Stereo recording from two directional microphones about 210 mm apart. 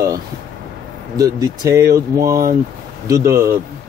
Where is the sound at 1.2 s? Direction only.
15° right (ahead or behind).